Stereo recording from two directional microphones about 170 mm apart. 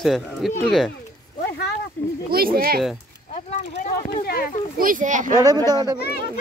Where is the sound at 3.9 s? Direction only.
60° left (ahead or behind).